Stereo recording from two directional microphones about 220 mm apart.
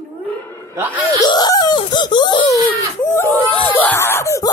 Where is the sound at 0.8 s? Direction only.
10° right (ahead or behind).